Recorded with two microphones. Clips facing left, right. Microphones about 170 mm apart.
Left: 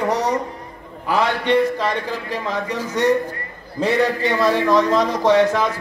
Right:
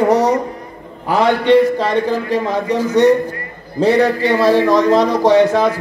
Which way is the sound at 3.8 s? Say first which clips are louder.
Right 5 dB; 35° right (ahead or behind).